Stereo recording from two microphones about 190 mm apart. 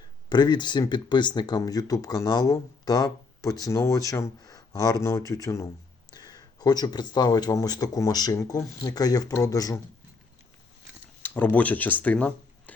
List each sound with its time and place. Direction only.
0.3 s speech: 25° left (ahead or behind)
11.2 s speech: 10° left (ahead or behind)